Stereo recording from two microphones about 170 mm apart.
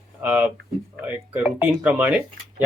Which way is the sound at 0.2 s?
10° right (ahead or behind).